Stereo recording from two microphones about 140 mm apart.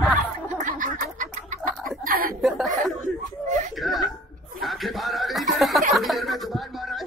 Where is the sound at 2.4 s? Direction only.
Centre (ahead or behind).